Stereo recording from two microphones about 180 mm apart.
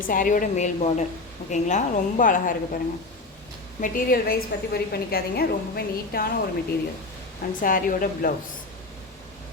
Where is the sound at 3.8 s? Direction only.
50° left (ahead or behind).